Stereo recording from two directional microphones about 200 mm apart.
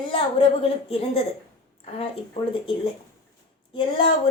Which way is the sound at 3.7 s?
25° left (ahead or behind).